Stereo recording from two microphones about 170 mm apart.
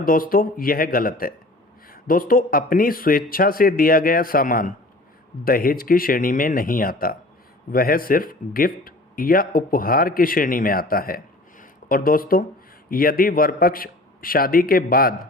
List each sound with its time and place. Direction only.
0.0 s speech: 55° left (ahead or behind)